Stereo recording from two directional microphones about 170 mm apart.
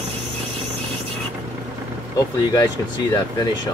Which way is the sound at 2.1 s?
20° left (ahead or behind).